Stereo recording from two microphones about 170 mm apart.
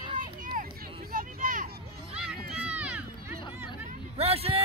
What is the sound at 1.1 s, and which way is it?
Vehicle, 55° right (ahead or behind).